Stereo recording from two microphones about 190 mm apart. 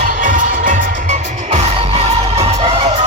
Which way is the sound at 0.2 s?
45° right (ahead or behind).